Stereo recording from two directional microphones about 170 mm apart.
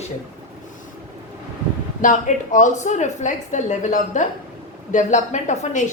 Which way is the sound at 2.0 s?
50° left (ahead or behind).